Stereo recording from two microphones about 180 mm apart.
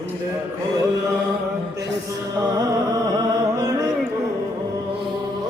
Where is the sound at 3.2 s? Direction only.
20° right (ahead or behind).